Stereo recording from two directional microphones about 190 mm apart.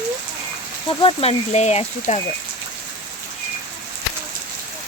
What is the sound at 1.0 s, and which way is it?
Speech, 30° left (ahead or behind).